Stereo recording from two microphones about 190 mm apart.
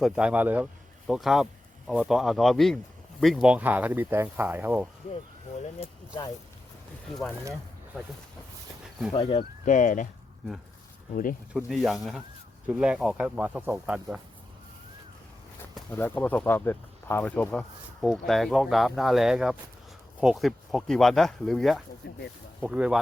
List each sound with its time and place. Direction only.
0.0 s speech: 5° right (ahead or behind)
7.1 s speech: centre (ahead or behind)
9.1 s speech: 30° left (ahead or behind)
9.4 s speech: 40° left (ahead or behind)
11.1 s speech: 45° left (ahead or behind)
11.5 s speech: centre (ahead or behind)
15.7 s speech: 10° left (ahead or behind)